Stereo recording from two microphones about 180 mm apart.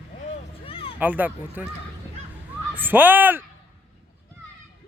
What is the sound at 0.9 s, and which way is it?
Speech, 10° right (ahead or behind).